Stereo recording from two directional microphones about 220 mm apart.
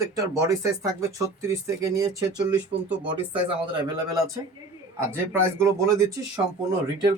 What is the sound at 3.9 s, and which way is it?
Speech, 15° right (ahead or behind).